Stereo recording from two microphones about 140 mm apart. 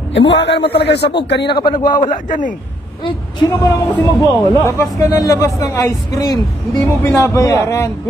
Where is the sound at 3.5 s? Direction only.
15° left (ahead or behind).